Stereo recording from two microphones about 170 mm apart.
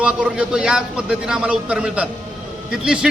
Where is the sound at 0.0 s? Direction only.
5° right (ahead or behind).